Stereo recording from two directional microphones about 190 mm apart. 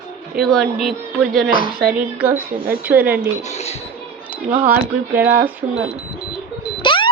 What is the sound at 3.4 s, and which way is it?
Speech, 35° left (ahead or behind).